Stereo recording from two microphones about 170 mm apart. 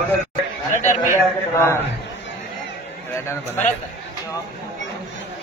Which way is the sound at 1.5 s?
15° left (ahead or behind).